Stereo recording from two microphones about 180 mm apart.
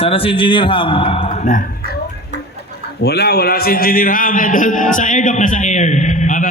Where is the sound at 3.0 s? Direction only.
60° left (ahead or behind); by 6.4 s 45° left (ahead or behind).